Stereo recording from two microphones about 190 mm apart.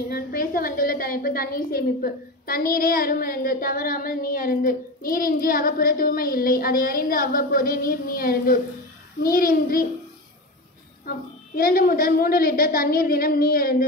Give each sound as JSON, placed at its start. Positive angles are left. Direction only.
{"t": 0.1, "sound": "a woman's voice", "side_deg": 50}
{"t": 11.1, "sound": "a woman's voice", "side_deg": 50}